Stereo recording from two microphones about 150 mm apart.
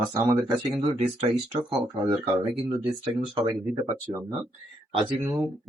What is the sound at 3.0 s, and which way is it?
Speech, 30° right (ahead or behind).